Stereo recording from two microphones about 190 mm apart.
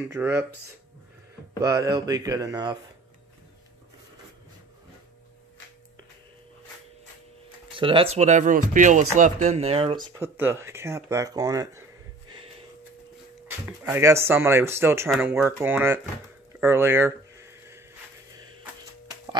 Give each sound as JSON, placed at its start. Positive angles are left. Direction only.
{"t": 0.1, "sound": "speech", "side_deg": -10}
{"t": 1.6, "sound": "speech", "side_deg": -15}
{"t": 7.7, "sound": "speech", "side_deg": -25}
{"t": 13.5, "sound": "speech", "side_deg": -10}
{"t": 16.5, "sound": "a sound", "side_deg": -10}